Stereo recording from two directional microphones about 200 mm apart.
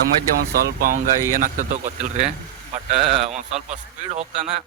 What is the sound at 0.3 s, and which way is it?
Speech, 50° right (ahead or behind).